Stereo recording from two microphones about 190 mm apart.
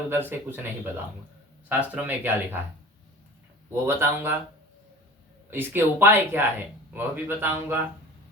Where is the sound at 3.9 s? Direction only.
15° right (ahead or behind).